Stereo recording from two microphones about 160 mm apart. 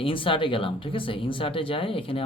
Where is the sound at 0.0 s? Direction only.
35° left (ahead or behind).